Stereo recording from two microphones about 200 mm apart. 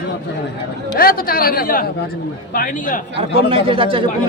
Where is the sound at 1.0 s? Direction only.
50° left (ahead or behind).